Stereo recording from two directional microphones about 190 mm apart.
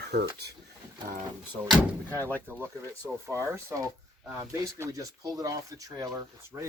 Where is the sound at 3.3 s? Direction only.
15° right (ahead or behind).